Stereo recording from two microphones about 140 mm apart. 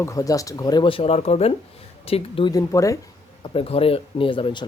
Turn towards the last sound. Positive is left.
turn(degrees=35)  # may be behind; listen again after turning